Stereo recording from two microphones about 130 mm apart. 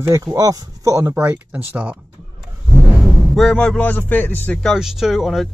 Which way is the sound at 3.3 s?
Centre (ahead or behind).